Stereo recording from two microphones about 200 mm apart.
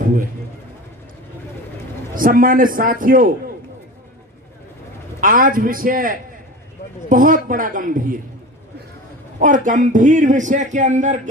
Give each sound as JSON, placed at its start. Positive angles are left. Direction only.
{"t": 0.0, "sound": "a man's voice", "side_deg": -40}
{"t": 2.1, "sound": "a man's voice", "side_deg": -45}
{"t": 5.2, "sound": "a man's voice", "side_deg": -45}
{"t": 9.4, "sound": "speech", "side_deg": -40}